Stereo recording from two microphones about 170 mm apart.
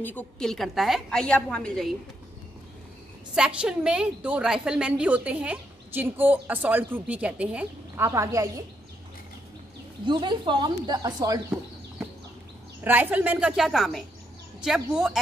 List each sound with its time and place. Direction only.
0.0 s a woman's voice: 10° left (ahead or behind)
3.3 s a woman's voice: 5° right (ahead or behind)
10.0 s speech: 25° right (ahead or behind)
12.8 s a woman's voice: 10° right (ahead or behind)